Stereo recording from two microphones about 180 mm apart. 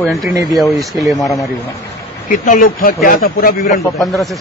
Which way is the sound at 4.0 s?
Centre (ahead or behind).